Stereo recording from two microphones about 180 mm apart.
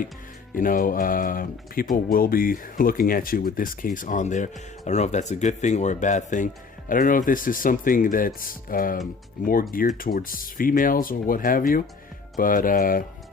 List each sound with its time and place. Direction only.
0.5 s speech: 50° left (ahead or behind)